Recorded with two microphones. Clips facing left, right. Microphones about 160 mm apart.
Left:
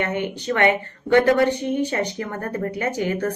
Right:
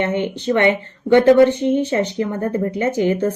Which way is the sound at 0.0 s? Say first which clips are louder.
Right 5 dB; 20° right (ahead or behind).